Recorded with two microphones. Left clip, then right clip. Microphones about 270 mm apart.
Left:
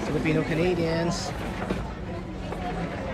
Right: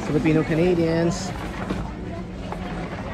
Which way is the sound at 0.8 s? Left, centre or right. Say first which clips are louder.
Right 5 dB; centre.